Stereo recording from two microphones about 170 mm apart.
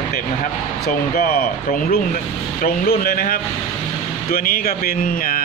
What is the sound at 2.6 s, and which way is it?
Speech, 65° left (ahead or behind).